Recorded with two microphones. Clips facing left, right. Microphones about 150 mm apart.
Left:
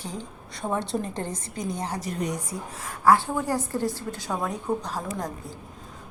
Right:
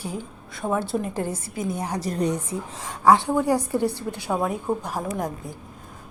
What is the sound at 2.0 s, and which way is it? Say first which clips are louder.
Speech: right 5 dB; 35° right (ahead or behind).